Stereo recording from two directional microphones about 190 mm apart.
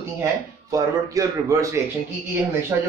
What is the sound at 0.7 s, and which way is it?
Speech, 15° right (ahead or behind).